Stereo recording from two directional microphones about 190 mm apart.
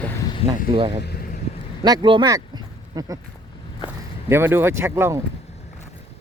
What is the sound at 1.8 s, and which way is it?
Speech, 25° right (ahead or behind).